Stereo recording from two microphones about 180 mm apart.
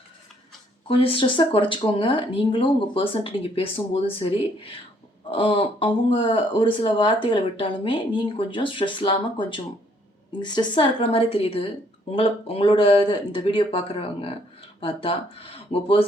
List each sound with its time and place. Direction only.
0.9 s a woman's voice: 30° left (ahead or behind)